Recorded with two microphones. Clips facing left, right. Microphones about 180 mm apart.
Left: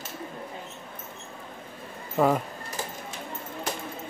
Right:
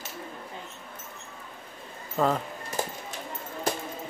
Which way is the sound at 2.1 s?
10° left (ahead or behind).